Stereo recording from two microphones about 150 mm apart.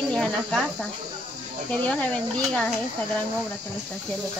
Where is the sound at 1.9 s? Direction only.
10° left (ahead or behind).